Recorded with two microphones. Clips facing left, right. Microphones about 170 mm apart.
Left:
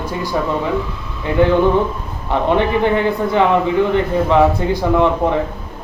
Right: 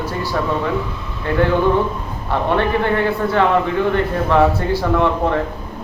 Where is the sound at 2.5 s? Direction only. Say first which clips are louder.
Left 3 dB; 15° left (ahead or behind).